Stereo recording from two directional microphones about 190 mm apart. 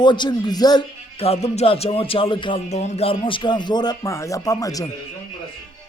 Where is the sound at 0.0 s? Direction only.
25° left (ahead or behind).